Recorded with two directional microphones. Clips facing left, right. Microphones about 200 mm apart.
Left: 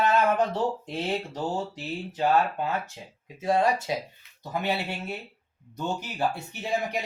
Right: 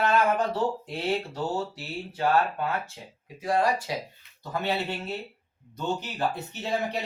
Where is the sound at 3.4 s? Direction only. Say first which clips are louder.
Left 1 dB; 25° left (ahead or behind).